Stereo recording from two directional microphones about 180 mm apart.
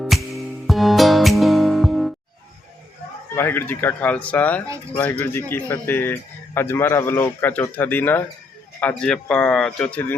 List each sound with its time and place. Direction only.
0.0 s music: centre (ahead or behind)
3.3 s speech: 15° left (ahead or behind)